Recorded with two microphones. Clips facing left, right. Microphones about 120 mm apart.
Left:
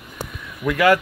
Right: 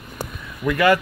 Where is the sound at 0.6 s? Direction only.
10° left (ahead or behind).